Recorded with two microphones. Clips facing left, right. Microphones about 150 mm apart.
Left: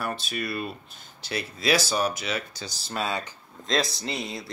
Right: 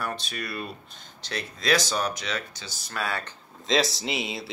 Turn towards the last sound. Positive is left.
turn(degrees=-5)  # may be behind; listen again after turning